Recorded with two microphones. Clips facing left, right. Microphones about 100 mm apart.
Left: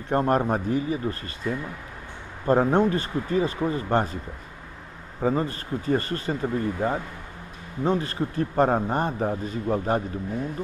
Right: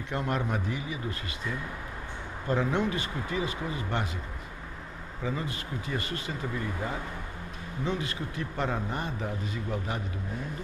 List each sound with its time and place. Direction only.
0.1 s speech: 40° left (ahead or behind)
5.2 s speech: 45° left (ahead or behind)